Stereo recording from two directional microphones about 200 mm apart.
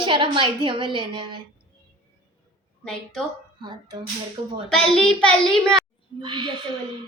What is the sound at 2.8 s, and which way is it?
Speech, 5° left (ahead or behind).